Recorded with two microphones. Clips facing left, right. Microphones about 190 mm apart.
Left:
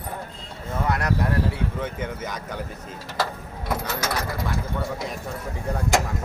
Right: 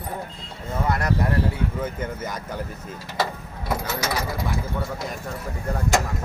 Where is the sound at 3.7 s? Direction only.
5° right (ahead or behind).